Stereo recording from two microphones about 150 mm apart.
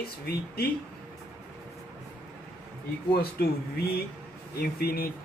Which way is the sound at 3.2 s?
90° left.